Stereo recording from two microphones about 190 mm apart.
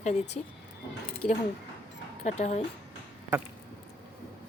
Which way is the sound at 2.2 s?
35° left (ahead or behind).